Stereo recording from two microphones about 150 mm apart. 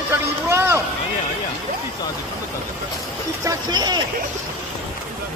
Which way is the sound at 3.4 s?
25° right (ahead or behind).